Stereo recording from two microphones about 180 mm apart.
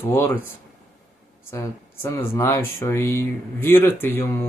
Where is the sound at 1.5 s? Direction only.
15° left (ahead or behind).